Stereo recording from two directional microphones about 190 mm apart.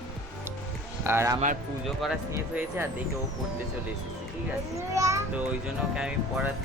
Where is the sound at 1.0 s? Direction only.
15° right (ahead or behind).